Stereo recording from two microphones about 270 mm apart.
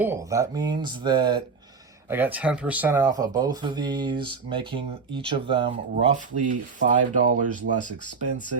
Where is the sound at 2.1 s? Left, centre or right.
Centre; by 7.9 s right.